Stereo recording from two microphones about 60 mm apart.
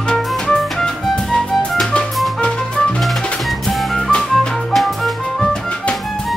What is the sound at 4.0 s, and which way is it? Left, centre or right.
Music, centre.